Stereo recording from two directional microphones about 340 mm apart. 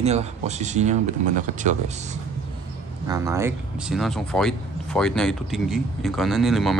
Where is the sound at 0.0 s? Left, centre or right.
Centre.